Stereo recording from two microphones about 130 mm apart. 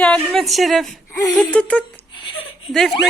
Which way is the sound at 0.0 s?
5° left (ahead or behind).